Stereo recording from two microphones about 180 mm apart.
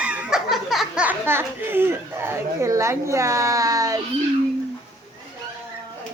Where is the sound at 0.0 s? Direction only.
5° right (ahead or behind).